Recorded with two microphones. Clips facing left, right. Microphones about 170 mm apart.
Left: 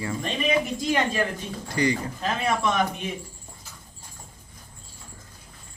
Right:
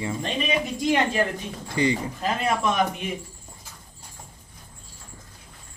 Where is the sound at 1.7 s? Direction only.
20° right (ahead or behind).